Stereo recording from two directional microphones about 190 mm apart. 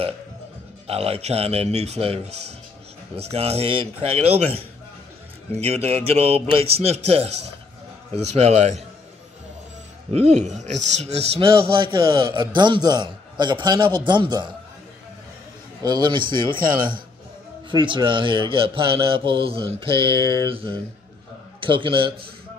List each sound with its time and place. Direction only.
0.8 s speech: 30° right (ahead or behind)
10.1 s a man's voice: 35° right (ahead or behind)
15.8 s a man's voice: 25° right (ahead or behind)
17.6 s a man's voice: 25° right (ahead or behind)